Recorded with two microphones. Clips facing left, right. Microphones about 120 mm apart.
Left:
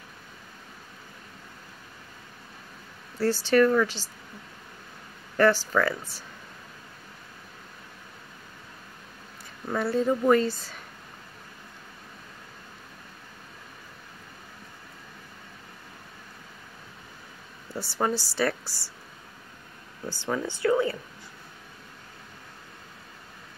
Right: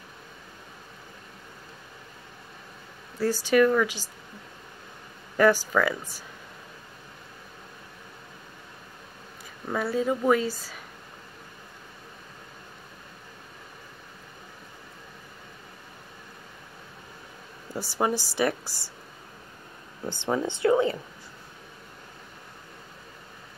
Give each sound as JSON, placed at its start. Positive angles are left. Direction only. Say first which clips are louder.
{"t": 3.2, "sound": "a woman's voice", "louder": "even", "side_deg": -15}
{"t": 5.4, "sound": "a woman's voice", "louder": "right 1 dB", "side_deg": -10}
{"t": 9.7, "sound": "speech", "louder": "left 1 dB", "side_deg": 0}
{"t": 17.7, "sound": "a woman's voice", "louder": "right 1 dB", "side_deg": -15}
{"t": 20.1, "sound": "speech", "louder": "right 3 dB", "side_deg": -20}